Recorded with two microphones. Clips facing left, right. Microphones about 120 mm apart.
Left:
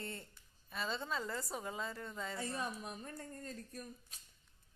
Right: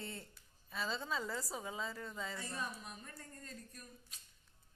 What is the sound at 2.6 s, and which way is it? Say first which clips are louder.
Speech: left 3 dB; 30° left (ahead or behind).